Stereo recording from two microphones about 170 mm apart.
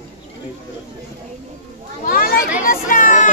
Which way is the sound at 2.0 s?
60° left (ahead or behind).